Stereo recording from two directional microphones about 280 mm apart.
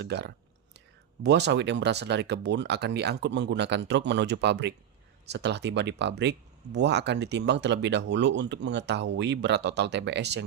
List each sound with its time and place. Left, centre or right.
0.0 s speech: right